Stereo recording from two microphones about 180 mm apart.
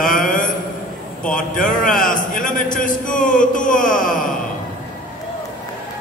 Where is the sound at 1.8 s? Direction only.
50° left (ahead or behind).